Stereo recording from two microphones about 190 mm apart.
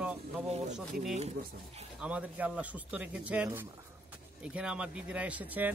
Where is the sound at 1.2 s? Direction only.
35° right (ahead or behind).